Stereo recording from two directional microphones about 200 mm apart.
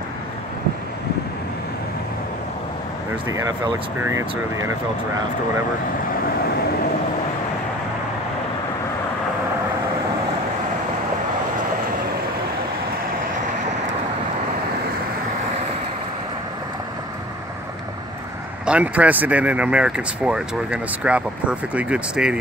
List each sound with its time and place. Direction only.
3.3 s speech: 15° right (ahead or behind)
18.7 s speech: 5° right (ahead or behind)